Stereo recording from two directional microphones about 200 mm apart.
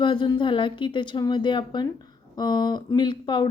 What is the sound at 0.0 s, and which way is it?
Speech, 25° left (ahead or behind).